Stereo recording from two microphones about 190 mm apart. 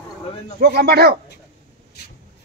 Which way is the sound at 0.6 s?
55° right (ahead or behind).